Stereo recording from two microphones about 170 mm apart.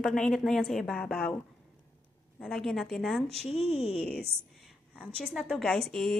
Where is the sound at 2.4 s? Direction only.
5° left (ahead or behind).